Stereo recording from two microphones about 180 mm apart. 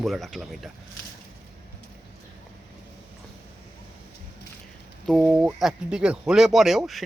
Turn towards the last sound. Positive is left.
turn(degrees=0)  # may be behind; listen again after turning